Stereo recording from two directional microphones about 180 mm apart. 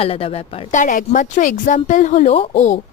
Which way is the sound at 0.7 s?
45° left (ahead or behind).